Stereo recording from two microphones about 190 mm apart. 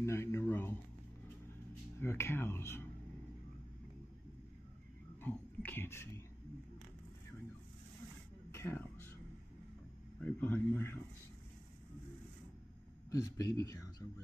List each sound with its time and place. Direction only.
0.0 s speech: 15° left (ahead or behind)
2.0 s speech: 15° left (ahead or behind)
5.2 s speech: 10° left (ahead or behind)
8.5 s music: 10° left (ahead or behind)
10.2 s speech: 10° left (ahead or behind)
13.1 s speech: 20° left (ahead or behind)